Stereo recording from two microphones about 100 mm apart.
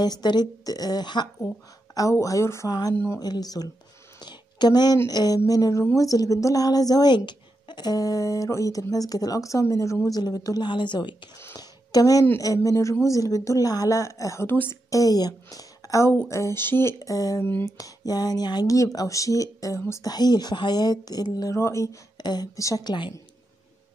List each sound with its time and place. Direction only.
0.0 s speech: 45° left (ahead or behind)
2.0 s speech: 35° left (ahead or behind)
4.2 s a sound: 45° left (ahead or behind)
4.9 s speech: 40° left (ahead or behind)
11.5 s a sound: 40° left (ahead or behind)
12.4 s speech: 35° left (ahead or behind)
14.9 s speech: 35° left (ahead or behind)
17.0 s speech: 35° left (ahead or behind)
21.5 s speech: 30° left (ahead or behind)
22.1 s speech: 45° left (ahead or behind)